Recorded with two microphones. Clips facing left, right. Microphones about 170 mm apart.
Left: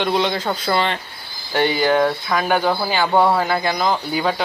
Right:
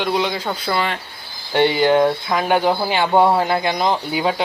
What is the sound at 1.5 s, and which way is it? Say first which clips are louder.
Speech: right 2 dB; 25° right (ahead or behind).